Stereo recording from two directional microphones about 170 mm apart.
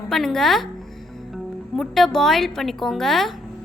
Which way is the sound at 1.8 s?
Centre (ahead or behind).